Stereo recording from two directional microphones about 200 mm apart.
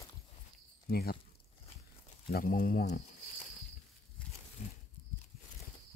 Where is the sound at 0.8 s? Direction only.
50° left (ahead or behind).